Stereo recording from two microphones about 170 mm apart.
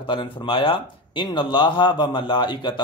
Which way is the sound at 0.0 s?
30° left (ahead or behind).